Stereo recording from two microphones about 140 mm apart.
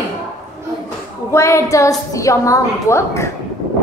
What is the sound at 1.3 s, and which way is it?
A woman's voice, 20° left (ahead or behind).